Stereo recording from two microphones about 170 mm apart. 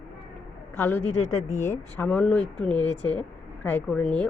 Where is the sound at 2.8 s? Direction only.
25° right (ahead or behind).